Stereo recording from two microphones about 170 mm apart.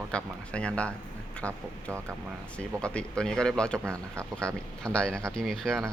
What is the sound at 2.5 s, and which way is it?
Speech, 5° left (ahead or behind).